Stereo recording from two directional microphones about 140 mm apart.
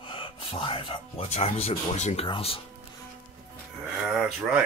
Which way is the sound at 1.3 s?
50° left (ahead or behind).